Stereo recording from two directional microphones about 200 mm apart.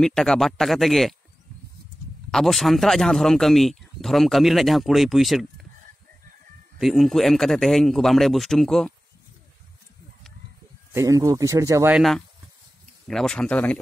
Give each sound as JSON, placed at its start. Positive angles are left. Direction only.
{"t": 0.0, "sound": "speech", "side_deg": 5}
{"t": 2.3, "sound": "speech", "side_deg": 0}
{"t": 6.8, "sound": "speech", "side_deg": 0}
{"t": 10.9, "sound": "a man's voice", "side_deg": -15}
{"t": 13.1, "sound": "speech", "side_deg": 5}